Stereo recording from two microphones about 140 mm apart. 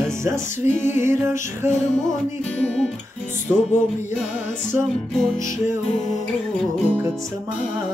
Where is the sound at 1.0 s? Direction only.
20° right (ahead or behind).